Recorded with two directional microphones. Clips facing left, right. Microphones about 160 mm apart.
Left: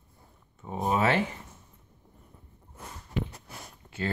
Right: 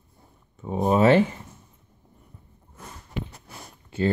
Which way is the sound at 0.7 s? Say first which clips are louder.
Right 8 dB; 30° right (ahead or behind).